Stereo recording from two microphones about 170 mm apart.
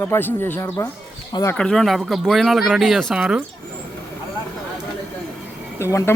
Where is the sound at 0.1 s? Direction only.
10° left (ahead or behind).